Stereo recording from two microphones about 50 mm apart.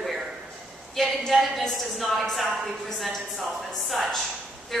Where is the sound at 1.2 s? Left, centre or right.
Centre.